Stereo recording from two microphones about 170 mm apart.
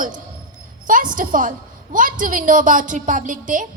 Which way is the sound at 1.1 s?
50° right (ahead or behind).